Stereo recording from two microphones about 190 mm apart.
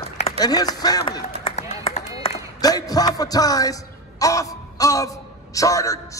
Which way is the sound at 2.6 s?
20° left (ahead or behind).